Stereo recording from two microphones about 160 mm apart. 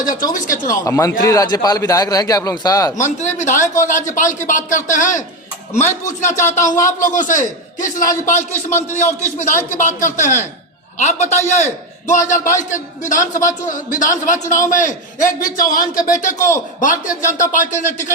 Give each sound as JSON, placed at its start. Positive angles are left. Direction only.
{"t": 0.3, "sound": "a man's voice", "side_deg": 55}
{"t": 0.9, "sound": "a man's voice", "side_deg": 20}
{"t": 2.9, "sound": "a man's voice", "side_deg": 50}